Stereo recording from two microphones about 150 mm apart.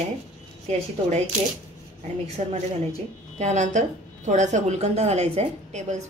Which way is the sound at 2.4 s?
45° right (ahead or behind).